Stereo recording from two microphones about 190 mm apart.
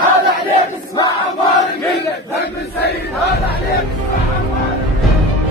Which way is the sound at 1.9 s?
60° left (ahead or behind).